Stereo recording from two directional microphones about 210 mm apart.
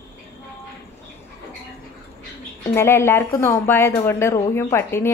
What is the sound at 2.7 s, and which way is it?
A woman's voice, 10° left (ahead or behind).